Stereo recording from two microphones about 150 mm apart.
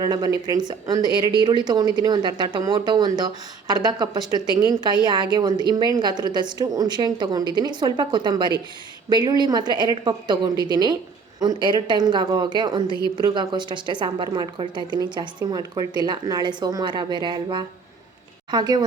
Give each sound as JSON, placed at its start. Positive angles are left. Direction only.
{"t": 0.0, "sound": "a woman's voice", "side_deg": -30}